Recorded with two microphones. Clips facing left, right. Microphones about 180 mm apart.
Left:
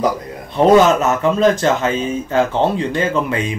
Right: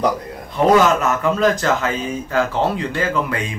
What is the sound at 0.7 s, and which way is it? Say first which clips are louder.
Speech: left 3 dB; 25° left (ahead or behind).